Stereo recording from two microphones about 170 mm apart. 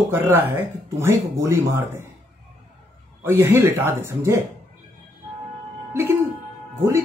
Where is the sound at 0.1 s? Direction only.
15° right (ahead or behind).